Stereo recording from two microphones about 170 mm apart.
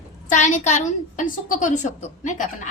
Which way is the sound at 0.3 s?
45° left (ahead or behind).